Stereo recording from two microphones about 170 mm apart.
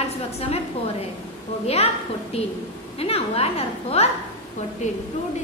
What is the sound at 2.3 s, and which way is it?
A woman's voice, 35° left (ahead or behind).